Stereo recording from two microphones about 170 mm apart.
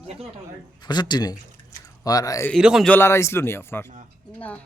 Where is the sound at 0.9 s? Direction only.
25° left (ahead or behind).